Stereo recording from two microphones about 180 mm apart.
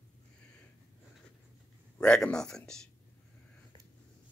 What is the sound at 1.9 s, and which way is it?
Speech, 5° left (ahead or behind).